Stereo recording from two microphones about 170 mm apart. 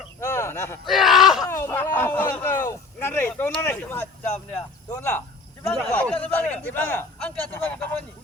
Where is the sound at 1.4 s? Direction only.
15° left (ahead or behind).